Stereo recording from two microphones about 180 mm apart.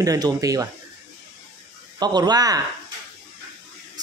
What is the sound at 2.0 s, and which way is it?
Speech, 25° right (ahead or behind).